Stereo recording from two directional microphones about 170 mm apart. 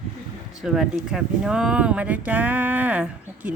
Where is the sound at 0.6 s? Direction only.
5° right (ahead or behind).